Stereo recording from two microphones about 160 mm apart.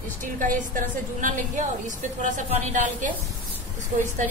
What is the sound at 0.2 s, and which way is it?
A woman's voice, 55° right (ahead or behind).